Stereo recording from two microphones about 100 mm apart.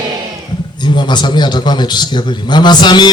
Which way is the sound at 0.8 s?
50° left (ahead or behind).